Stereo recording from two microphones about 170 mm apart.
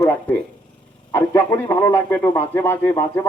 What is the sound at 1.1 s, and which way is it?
Speech, 20° left (ahead or behind).